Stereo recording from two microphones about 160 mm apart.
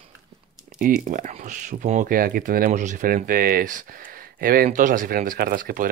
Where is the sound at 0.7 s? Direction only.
65° right (ahead or behind).